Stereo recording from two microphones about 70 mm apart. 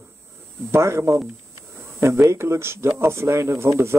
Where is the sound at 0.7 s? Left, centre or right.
Right.